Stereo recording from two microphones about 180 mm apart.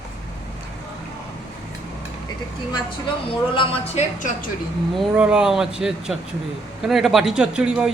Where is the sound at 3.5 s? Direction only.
35° left (ahead or behind).